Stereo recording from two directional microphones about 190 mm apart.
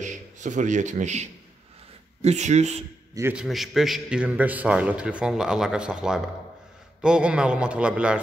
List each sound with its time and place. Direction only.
0.0 s a man's voice: 40° right (ahead or behind)
3.2 s a man's voice: 10° right (ahead or behind)
3.4 s a man's voice: centre (ahead or behind)